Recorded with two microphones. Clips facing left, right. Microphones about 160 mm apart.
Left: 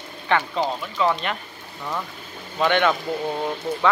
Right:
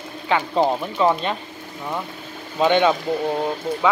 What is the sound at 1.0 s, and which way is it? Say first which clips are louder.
Speech: right 3 dB; 30° right (ahead or behind).